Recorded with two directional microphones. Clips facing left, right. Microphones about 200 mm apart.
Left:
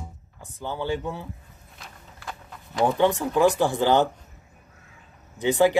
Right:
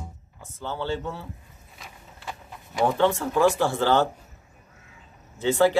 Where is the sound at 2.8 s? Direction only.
15° left (ahead or behind).